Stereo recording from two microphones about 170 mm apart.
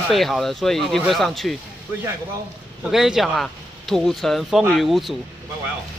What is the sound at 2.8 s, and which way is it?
Speech, centre (ahead or behind).